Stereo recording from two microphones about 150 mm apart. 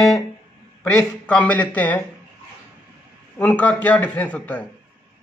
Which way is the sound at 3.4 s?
10° left (ahead or behind).